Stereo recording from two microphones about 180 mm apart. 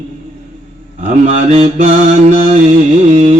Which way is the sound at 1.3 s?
40° right (ahead or behind).